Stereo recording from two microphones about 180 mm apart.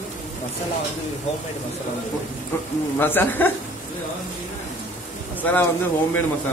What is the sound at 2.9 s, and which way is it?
Speech, 10° left (ahead or behind).